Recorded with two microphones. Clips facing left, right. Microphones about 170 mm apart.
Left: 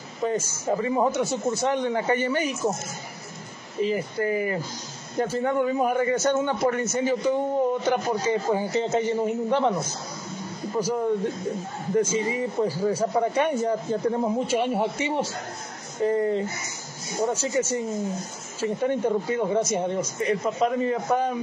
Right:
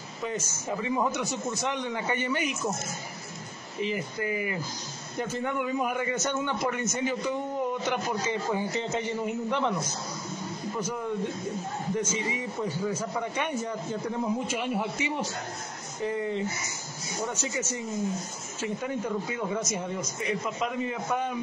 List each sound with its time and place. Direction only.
0.2 s a man's voice: 40° left (ahead or behind)
3.8 s a man's voice: 40° left (ahead or behind)
10.8 s a man's voice: 30° left (ahead or behind)